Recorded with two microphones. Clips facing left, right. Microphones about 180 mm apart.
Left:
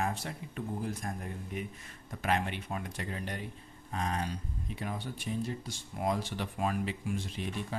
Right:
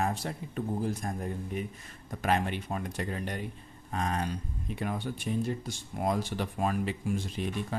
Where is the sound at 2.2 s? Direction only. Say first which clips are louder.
Right 3 dB; 40° right (ahead or behind).